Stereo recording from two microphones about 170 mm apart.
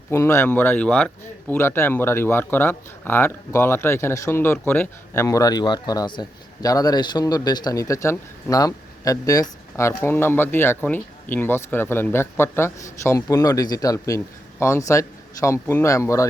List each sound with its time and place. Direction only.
0.1 s speech: 15° left (ahead or behind)